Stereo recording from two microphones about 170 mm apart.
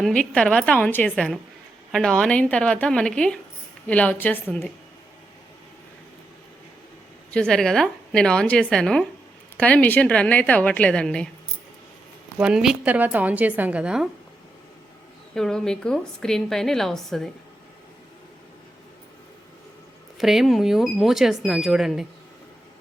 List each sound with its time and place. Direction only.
0.0 s a woman's voice: 5° left (ahead or behind)
7.3 s a woman's voice: 5° left (ahead or behind)
12.4 s a woman's voice: 5° right (ahead or behind)
15.4 s a woman's voice: 5° left (ahead or behind)
20.1 s a woman's voice: centre (ahead or behind)